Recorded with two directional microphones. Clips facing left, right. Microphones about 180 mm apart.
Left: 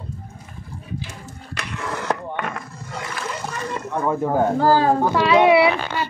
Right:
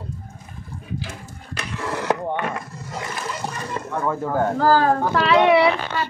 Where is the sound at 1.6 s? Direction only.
Centre (ahead or behind).